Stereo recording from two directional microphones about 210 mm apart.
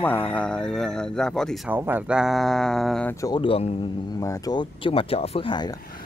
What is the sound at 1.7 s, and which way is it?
Speech, 10° right (ahead or behind).